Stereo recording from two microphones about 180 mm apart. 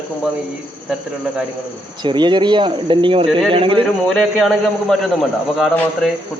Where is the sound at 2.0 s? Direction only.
25° right (ahead or behind).